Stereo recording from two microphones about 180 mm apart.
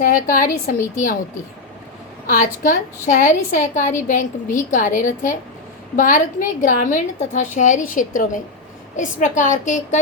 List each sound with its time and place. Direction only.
0.0 s a woman's voice: 50° left (ahead or behind)
2.2 s a woman's voice: 45° left (ahead or behind)